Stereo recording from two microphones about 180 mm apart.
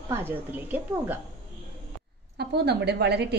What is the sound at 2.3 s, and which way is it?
A woman's voice, 65° right (ahead or behind).